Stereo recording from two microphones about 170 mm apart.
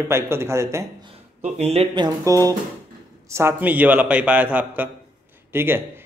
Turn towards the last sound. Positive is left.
turn(degrees=-15)  # may be behind; listen again after turning